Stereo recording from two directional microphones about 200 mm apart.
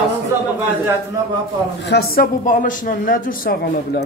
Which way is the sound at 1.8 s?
55° left (ahead or behind).